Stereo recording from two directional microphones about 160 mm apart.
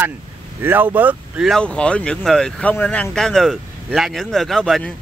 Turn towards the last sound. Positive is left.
turn(degrees=5)  # may be behind; listen again after turning